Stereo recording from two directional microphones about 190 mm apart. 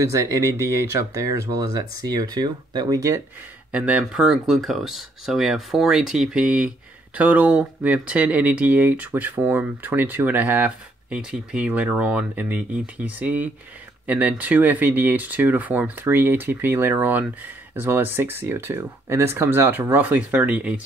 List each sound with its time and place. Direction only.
0.0 s speech: 15° right (ahead or behind)
3.7 s speech: 5° right (ahead or behind)